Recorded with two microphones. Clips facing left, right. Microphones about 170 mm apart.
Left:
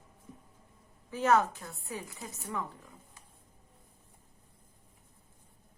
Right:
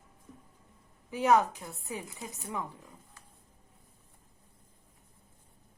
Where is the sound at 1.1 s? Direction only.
15° right (ahead or behind).